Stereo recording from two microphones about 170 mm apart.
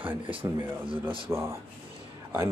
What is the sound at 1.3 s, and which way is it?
Speech, 15° right (ahead or behind).